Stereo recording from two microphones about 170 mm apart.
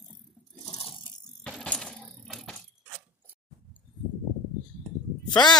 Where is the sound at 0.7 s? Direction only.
30° left (ahead or behind).